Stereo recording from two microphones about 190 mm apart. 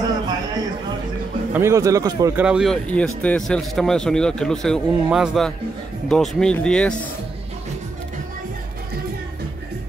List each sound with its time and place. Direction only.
1.5 s speech: 15° right (ahead or behind)
2.4 s a man's voice: 5° right (ahead or behind)